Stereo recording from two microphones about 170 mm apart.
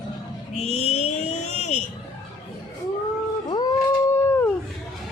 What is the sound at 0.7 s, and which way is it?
Vehicle, 40° left (ahead or behind).